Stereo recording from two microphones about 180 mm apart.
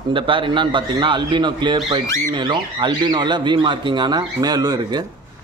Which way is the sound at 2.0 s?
15° left (ahead or behind).